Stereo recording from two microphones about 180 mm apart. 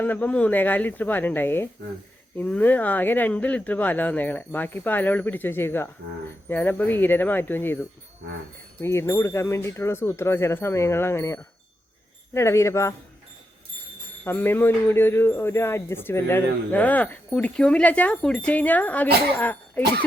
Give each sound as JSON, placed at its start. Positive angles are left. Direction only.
{"t": 0.0, "sound": "a man's voice", "side_deg": 10}
{"t": 14.3, "sound": "a man's voice", "side_deg": 10}